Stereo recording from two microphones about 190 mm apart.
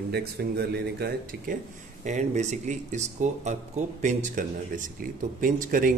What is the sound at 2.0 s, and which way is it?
Speech, 40° right (ahead or behind).